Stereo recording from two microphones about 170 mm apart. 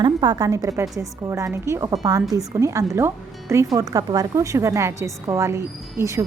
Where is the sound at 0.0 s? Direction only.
25° right (ahead or behind).